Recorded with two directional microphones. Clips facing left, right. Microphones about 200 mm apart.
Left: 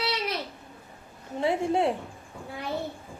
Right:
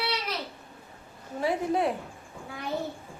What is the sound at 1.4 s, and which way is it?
Speech, 25° left (ahead or behind).